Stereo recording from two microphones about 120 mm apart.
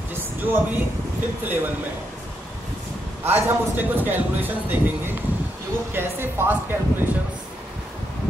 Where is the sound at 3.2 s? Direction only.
15° right (ahead or behind).